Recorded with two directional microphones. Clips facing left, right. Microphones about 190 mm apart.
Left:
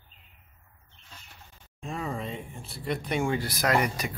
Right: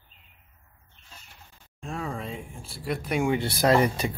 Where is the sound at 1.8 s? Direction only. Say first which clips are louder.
Even; centre (ahead or behind).